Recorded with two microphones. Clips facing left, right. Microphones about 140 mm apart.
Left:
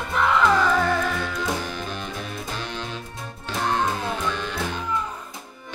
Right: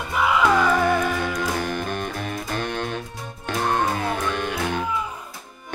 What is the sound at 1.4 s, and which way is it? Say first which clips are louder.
Music: right 3 dB; 55° right (ahead or behind).